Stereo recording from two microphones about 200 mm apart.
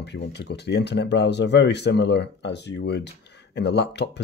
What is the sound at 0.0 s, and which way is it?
Speech, 60° left (ahead or behind).